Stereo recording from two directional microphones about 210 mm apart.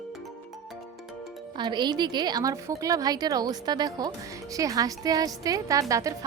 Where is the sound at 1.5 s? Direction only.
20° right (ahead or behind).